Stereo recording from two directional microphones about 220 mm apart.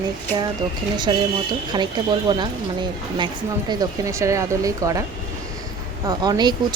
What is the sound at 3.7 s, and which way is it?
Speech, 15° right (ahead or behind).